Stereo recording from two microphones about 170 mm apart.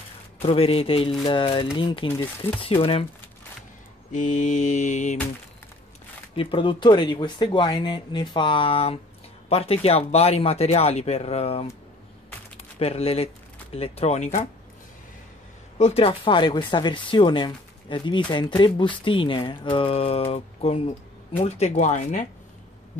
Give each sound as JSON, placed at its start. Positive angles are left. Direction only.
{"t": 0.4, "sound": "speech", "side_deg": 35}
{"t": 4.1, "sound": "mantra", "side_deg": 45}
{"t": 6.3, "sound": "speech", "side_deg": 30}
{"t": 12.7, "sound": "speech", "side_deg": 35}
{"t": 15.8, "sound": "speech", "side_deg": 35}
{"t": 21.4, "sound": "mantra", "side_deg": 40}